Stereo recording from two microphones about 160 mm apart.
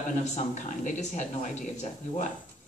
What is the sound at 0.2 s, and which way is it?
Speech, 50° left (ahead or behind).